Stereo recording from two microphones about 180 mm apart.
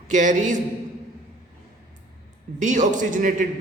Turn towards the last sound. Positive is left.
turn(degrees=-45)  # may be behind; listen again after turning